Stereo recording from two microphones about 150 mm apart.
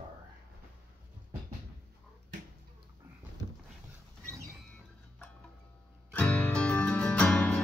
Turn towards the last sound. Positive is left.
turn(degrees=5)  # may be behind; listen again after turning